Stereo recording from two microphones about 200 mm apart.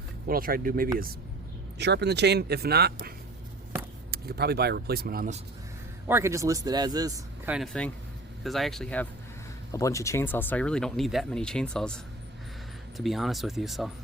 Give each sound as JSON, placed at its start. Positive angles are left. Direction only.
{"t": 0.3, "sound": "speech", "side_deg": -45}
{"t": 1.8, "sound": "speech", "side_deg": -60}
{"t": 4.1, "sound": "speech", "side_deg": -50}
{"t": 6.1, "sound": "speech", "side_deg": -10}
{"t": 7.4, "sound": "speech", "side_deg": -5}
{"t": 9.7, "sound": "speech", "side_deg": 15}
{"t": 13.0, "sound": "speech", "side_deg": 0}